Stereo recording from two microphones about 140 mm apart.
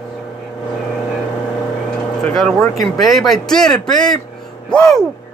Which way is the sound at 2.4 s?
Centre (ahead or behind).